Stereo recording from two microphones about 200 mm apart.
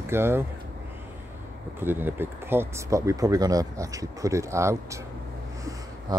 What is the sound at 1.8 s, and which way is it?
Speech, 10° right (ahead or behind).